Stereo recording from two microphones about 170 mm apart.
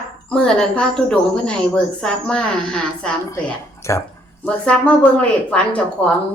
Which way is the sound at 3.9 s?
15° left (ahead or behind).